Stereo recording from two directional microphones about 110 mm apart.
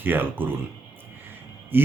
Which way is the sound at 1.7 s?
20° right (ahead or behind).